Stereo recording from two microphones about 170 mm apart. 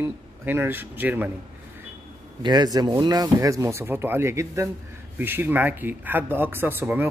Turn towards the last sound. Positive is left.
turn(degrees=-15)  # may be behind; listen again after turning